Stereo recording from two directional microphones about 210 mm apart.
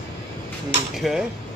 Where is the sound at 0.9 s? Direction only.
Centre (ahead or behind).